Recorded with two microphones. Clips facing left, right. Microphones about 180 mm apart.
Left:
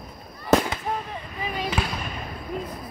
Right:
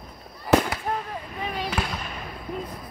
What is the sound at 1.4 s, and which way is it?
Basketball bounce, centre (ahead or behind).